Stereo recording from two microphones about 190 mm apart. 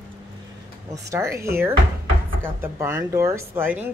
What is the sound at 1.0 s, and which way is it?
Speech, 15° right (ahead or behind).